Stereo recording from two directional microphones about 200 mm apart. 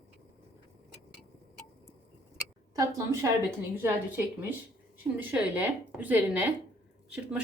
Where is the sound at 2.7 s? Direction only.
15° right (ahead or behind).